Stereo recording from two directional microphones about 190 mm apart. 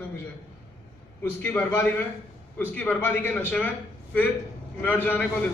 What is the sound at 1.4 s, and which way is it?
A man's voice, 10° left (ahead or behind).